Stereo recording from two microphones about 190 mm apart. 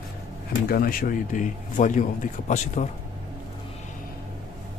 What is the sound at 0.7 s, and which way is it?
A man's voice, 50° left (ahead or behind).